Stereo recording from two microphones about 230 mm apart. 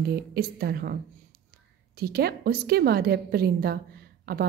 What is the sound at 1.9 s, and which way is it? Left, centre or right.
A woman's voice, right.